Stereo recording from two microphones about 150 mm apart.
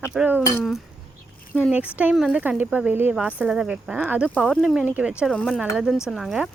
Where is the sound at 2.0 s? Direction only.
5° right (ahead or behind).